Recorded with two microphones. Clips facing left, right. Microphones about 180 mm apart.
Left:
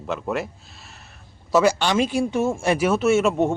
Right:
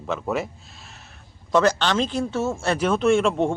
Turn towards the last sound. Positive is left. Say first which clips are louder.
# left 1 dB
turn(degrees=5)  # may be behind; listen again after turning